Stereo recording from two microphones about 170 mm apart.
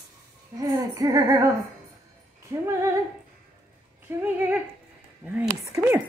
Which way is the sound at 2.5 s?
15° right (ahead or behind).